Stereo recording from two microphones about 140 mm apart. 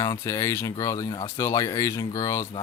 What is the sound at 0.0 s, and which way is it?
Speech, 25° left (ahead or behind).